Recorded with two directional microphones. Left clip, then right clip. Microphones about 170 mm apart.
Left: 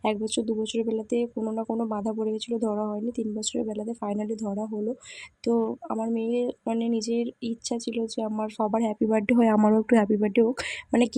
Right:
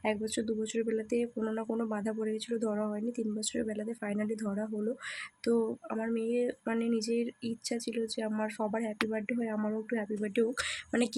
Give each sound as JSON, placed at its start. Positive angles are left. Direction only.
{"t": 0.0, "sound": "speech", "side_deg": 25}
{"t": 5.5, "sound": "speech", "side_deg": 20}
{"t": 8.7, "sound": "speech", "side_deg": 45}